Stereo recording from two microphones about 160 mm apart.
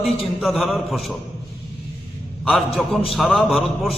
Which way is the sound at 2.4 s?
Centre (ahead or behind).